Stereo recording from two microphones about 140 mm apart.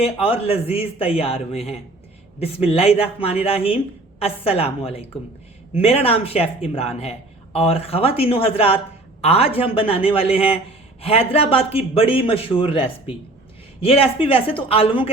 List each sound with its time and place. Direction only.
0.0 s a man's voice: 45° left (ahead or behind)
2.4 s a man's voice: 45° left (ahead or behind)